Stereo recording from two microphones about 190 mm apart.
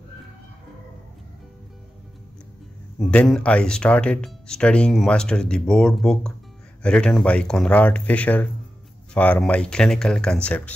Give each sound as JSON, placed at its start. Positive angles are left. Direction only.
{"t": 3.0, "sound": "speech", "side_deg": 5}